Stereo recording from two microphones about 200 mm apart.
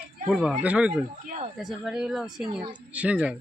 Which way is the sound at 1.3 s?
40° right (ahead or behind).